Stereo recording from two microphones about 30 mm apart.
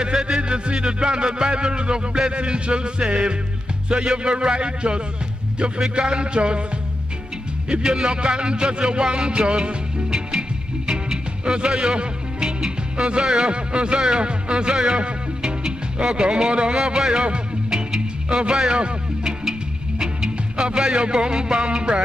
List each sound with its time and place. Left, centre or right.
0.0 s music: right
7.8 s music: right
11.4 s music: right
16.2 s music: right
17.6 s music: right
18.6 s music: right